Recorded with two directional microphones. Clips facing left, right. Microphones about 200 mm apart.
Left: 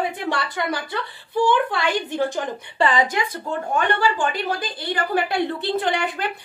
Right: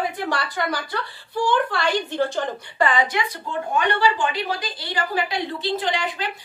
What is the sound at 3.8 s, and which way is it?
A woman's voice, 50° left (ahead or behind).